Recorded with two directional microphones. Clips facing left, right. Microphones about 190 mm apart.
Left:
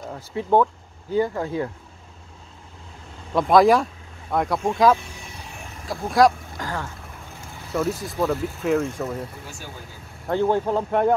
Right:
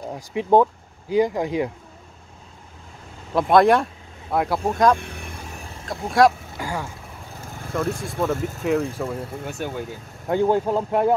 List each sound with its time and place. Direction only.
0.1 s speech: 15° right (ahead or behind)
3.3 s speech: centre (ahead or behind)
4.9 s vehicle: 60° right (ahead or behind)
6.0 s speech: centre (ahead or behind)
6.6 s speech: 10° right (ahead or behind)
7.7 s speech: 5° left (ahead or behind)
9.4 s speech: 60° right (ahead or behind)
10.2 s speech: 15° right (ahead or behind)